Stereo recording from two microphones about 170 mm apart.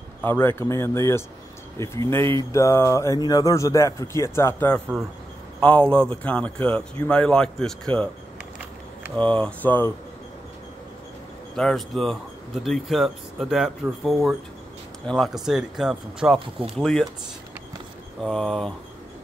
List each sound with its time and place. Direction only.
0.2 s speech: 15° left (ahead or behind)
9.1 s speech: 5° left (ahead or behind)
11.5 s speech: centre (ahead or behind)
18.2 s speech: centre (ahead or behind)